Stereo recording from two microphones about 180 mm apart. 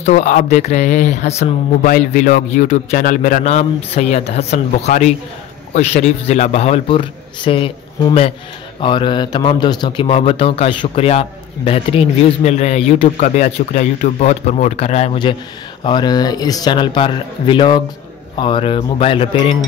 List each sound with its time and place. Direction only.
0.0 s a man's voice: 40° left (ahead or behind)
15.8 s a man's voice: 25° left (ahead or behind)